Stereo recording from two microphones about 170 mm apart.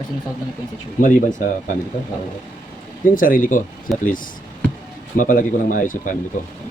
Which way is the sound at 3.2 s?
55° left (ahead or behind).